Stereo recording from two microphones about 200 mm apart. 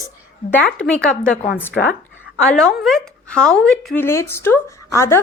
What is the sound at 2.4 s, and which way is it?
Speech, 5° left (ahead or behind).